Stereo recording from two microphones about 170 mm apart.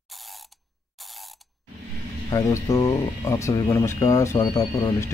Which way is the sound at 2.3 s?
20° left (ahead or behind).